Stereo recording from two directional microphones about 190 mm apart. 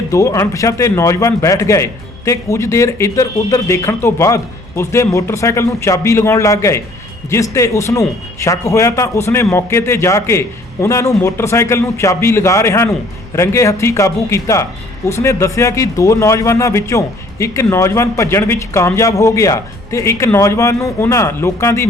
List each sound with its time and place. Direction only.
0.1 s a man's voice: 15° left (ahead or behind)